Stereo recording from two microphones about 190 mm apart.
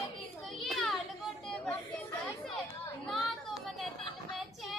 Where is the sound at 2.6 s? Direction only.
Centre (ahead or behind).